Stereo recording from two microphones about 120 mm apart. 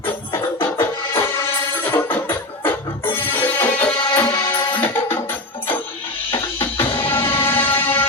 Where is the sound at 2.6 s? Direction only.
15° left (ahead or behind).